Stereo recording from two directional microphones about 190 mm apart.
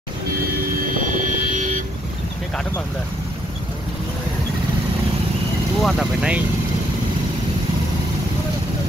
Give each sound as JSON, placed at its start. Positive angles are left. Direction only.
{"t": 1.0, "sound": "vehicle", "side_deg": -40}
{"t": 5.8, "sound": "speech", "side_deg": 0}